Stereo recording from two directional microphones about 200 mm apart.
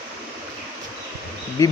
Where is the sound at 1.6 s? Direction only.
15° left (ahead or behind).